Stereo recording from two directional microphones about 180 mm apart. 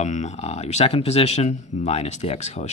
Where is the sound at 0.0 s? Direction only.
40° left (ahead or behind).